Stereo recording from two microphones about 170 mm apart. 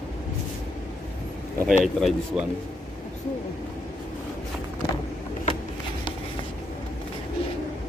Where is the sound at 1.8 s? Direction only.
Centre (ahead or behind).